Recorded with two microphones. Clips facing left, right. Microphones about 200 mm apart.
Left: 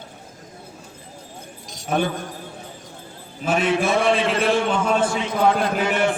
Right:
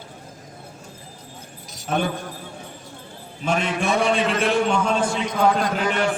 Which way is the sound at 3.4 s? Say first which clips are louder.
Left 3 dB; 5° left (ahead or behind).